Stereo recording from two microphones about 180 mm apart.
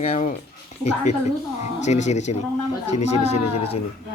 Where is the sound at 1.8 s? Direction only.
40° left (ahead or behind).